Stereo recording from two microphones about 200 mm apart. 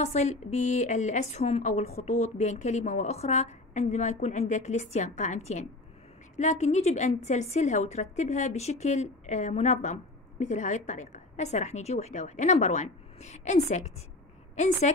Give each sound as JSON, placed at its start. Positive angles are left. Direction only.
{"t": 0.0, "sound": "a woman's voice", "side_deg": 35}